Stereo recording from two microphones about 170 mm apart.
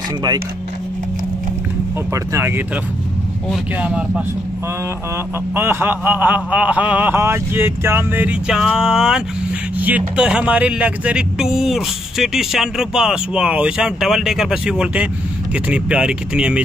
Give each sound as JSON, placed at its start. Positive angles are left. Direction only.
{"t": 2.3, "sound": "speech", "side_deg": -15}
{"t": 3.8, "sound": "speech", "side_deg": -5}
{"t": 5.5, "sound": "speech", "side_deg": -15}